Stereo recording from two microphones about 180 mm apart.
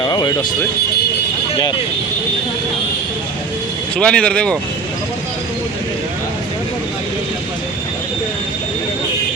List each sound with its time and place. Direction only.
0.0 s music: 25° left (ahead or behind)
3.9 s speech: 5° left (ahead or behind)